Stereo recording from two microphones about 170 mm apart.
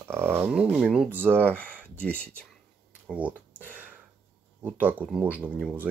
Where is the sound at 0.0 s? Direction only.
15° right (ahead or behind).